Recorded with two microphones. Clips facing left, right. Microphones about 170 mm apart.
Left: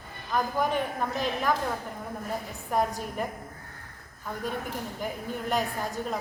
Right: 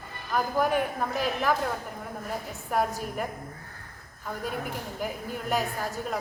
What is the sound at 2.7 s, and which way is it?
Speech, 5° right (ahead or behind).